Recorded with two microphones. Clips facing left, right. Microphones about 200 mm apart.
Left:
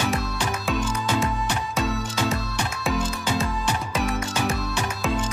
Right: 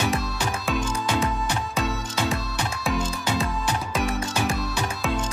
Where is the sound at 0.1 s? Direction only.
Centre (ahead or behind).